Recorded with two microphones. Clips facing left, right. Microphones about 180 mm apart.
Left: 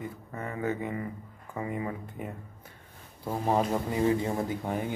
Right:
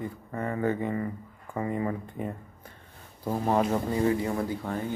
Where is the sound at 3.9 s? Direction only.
20° left (ahead or behind).